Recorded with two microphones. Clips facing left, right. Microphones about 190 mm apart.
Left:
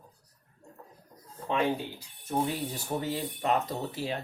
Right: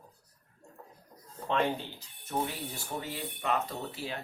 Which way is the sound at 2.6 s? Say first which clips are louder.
Left 6 dB; 40° left (ahead or behind).